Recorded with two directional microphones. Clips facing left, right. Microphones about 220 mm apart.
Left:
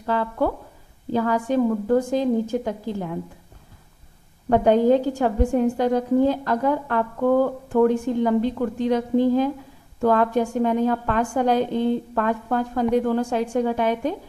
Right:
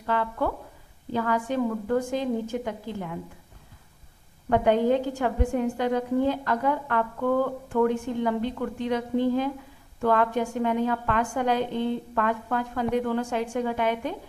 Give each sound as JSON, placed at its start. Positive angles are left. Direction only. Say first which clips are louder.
{"t": 0.0, "sound": "a woman's voice", "louder": "left 4 dB", "side_deg": 35}
{"t": 4.5, "sound": "a woman's voice", "louder": "left 5 dB", "side_deg": 40}